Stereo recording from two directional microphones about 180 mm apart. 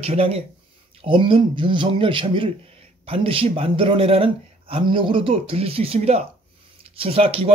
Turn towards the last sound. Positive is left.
turn(degrees=-30)  # may be behind; listen again after turning